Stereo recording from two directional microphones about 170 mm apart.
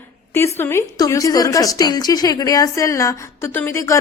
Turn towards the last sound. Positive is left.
turn(degrees=15)  # may be behind; listen again after turning